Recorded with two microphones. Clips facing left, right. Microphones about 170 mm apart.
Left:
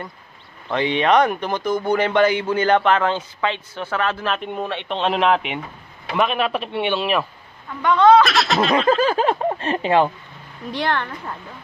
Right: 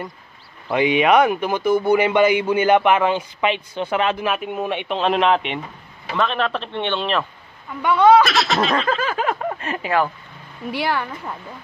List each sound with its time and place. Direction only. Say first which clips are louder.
0.7 s a man's voice: right 2 dB; 10° right (ahead or behind); by 7.2 s 10° left (ahead or behind)
7.8 s speech: even; 10° right (ahead or behind)
8.9 s speech: left 4 dB; 30° left (ahead or behind)
10.7 s speech: even; 5° right (ahead or behind)